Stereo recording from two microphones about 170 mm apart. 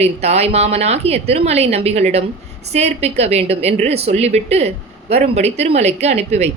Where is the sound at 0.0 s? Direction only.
40° right (ahead or behind).